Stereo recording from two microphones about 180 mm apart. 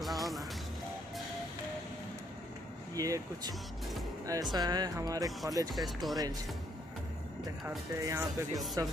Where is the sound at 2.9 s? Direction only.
20° right (ahead or behind).